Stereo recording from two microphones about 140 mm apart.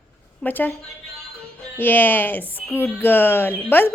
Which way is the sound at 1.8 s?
15° left (ahead or behind).